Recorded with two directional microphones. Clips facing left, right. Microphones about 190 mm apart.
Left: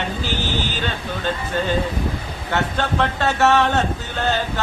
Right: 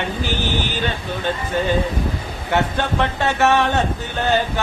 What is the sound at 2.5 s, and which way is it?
Speech, 15° right (ahead or behind).